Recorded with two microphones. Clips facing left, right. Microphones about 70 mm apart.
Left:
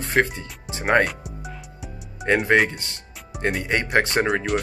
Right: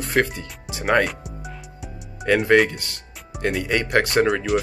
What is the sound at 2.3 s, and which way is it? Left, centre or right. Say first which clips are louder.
Speech: right 2 dB; left.